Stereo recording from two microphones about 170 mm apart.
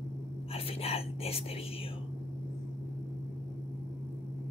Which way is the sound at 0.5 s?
35° left (ahead or behind).